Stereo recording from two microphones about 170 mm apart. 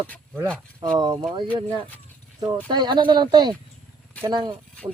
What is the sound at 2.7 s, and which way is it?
Speech, 25° right (ahead or behind).